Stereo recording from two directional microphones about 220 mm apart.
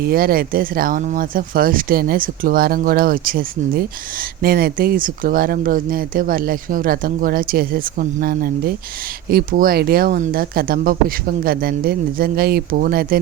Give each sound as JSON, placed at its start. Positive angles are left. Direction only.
{"t": 0.0, "sound": "speech", "side_deg": -40}